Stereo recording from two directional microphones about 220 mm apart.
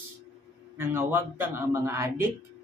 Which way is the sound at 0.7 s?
10° right (ahead or behind).